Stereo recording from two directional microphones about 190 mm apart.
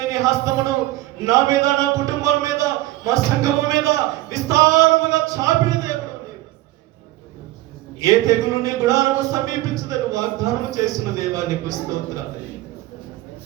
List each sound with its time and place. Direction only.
0.1 s a man's voice: 15° right (ahead or behind)
7.9 s a man's voice: 15° right (ahead or behind)